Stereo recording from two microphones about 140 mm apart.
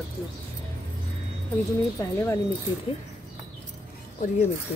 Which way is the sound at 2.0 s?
20° left (ahead or behind).